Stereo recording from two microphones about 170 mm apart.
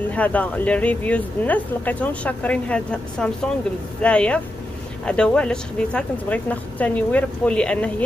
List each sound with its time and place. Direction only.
0.1 s speech: 10° left (ahead or behind)